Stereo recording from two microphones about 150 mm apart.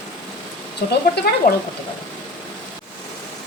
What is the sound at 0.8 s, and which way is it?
Speech, 75° left (ahead or behind).